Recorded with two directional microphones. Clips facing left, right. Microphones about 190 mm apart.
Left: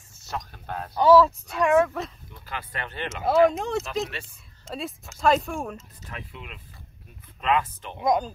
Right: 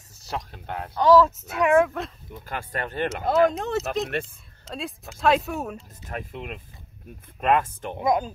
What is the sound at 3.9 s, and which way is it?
Speech, 50° right (ahead or behind).